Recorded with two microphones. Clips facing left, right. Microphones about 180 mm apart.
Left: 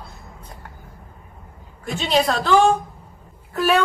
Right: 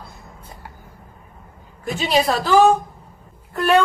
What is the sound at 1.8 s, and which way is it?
A woman's voice, centre (ahead or behind).